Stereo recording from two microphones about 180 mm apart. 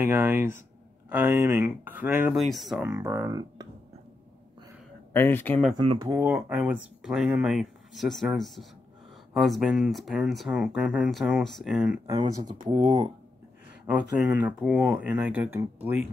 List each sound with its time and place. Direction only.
0.0 s speech: 15° right (ahead or behind)
2.9 s speech: 15° right (ahead or behind)
5.1 s speech: 10° left (ahead or behind)
5.8 s speech: 25° right (ahead or behind)
6.2 s speech: 10° right (ahead or behind)
12.1 s speech: 25° right (ahead or behind)
13.8 s speech: 10° right (ahead or behind)